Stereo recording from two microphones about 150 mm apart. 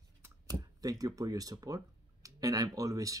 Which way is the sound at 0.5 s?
25° right (ahead or behind).